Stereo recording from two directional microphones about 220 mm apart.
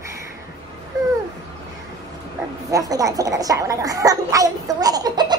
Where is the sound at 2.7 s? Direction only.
15° right (ahead or behind).